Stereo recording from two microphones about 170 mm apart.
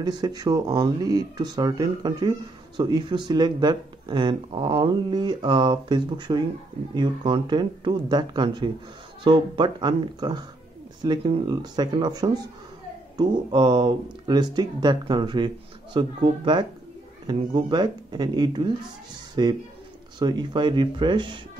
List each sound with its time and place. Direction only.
0.0 s speech: 25° right (ahead or behind)